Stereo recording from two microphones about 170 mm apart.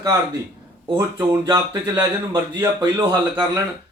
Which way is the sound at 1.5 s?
25° right (ahead or behind).